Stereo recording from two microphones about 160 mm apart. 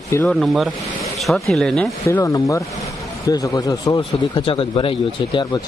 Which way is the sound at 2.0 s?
20° left (ahead or behind).